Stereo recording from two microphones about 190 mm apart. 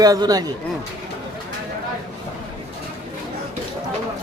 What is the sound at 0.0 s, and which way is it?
Speech, 20° right (ahead or behind).